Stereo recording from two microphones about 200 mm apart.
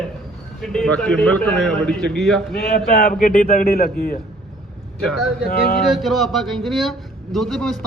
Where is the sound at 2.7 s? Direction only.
45° left (ahead or behind).